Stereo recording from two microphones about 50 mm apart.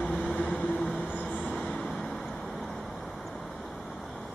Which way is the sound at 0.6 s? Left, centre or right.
Left.